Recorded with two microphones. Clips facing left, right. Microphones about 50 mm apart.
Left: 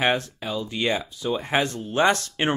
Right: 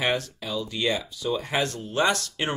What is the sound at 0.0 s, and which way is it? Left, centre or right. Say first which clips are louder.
Speech: left 3 dB; left.